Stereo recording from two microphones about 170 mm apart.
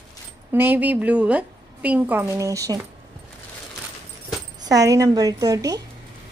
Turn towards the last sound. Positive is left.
turn(degrees=-20)  # may be behind; listen again after turning